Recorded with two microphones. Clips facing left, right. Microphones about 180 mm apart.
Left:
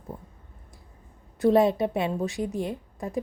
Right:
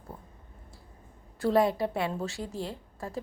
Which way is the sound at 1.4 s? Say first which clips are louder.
Left 5 dB; 20° left (ahead or behind).